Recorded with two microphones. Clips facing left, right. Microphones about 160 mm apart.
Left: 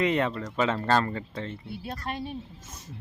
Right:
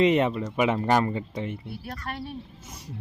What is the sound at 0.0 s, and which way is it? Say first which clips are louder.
Speech: right 5 dB; 20° right (ahead or behind).